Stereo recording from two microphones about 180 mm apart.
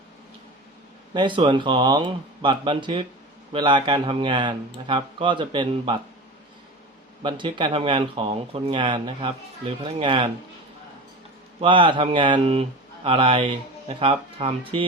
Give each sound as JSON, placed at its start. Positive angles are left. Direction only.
{"t": 1.1, "sound": "speech", "side_deg": -25}
{"t": 7.2, "sound": "speech", "side_deg": -25}
{"t": 11.6, "sound": "speech", "side_deg": -25}